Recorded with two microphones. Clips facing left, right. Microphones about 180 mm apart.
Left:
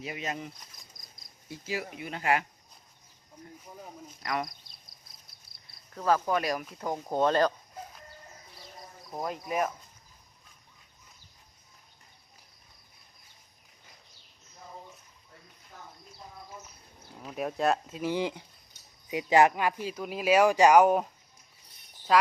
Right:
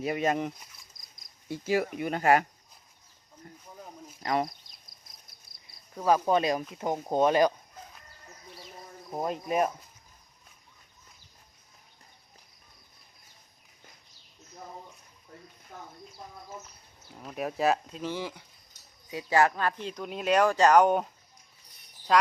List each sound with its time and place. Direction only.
0.0 s speech: 50° right (ahead or behind)
4.2 s speech: 30° right (ahead or behind)
5.9 s speech: 10° right (ahead or behind)
9.0 s speech: 20° right (ahead or behind)
17.2 s speech: centre (ahead or behind)
18.1 s speech: 20° left (ahead or behind); by 21.1 s 5° left (ahead or behind)
22.1 s speech: centre (ahead or behind)